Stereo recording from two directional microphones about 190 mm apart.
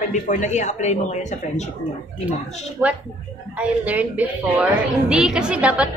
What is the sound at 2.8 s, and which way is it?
A woman's voice, 5° right (ahead or behind).